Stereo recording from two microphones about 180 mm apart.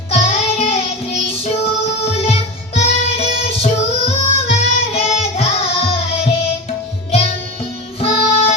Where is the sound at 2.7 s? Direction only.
35° left (ahead or behind).